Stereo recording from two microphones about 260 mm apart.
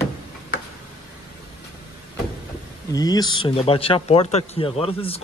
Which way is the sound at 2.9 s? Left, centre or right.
Centre.